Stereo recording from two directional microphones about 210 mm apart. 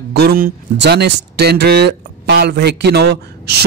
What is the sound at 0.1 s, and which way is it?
Speech, 45° right (ahead or behind).